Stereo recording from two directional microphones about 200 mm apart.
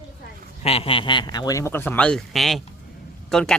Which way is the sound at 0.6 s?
30° left (ahead or behind).